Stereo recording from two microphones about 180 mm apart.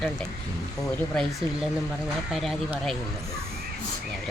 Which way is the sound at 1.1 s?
5° left (ahead or behind).